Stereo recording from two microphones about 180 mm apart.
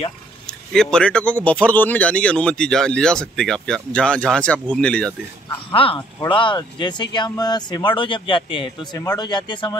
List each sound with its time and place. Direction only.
0.5 s speech: 5° left (ahead or behind)
5.7 s speech: 30° left (ahead or behind)